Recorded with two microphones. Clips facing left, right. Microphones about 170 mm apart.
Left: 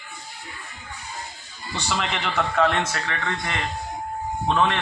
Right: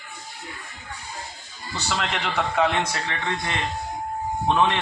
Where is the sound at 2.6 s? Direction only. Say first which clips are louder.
Left 1 dB; 15° right (ahead or behind).